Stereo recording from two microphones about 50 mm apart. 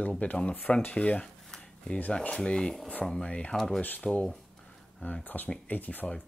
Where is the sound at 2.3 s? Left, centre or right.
Centre.